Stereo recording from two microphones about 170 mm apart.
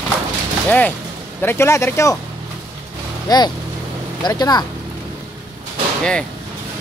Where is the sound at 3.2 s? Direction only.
25° left (ahead or behind).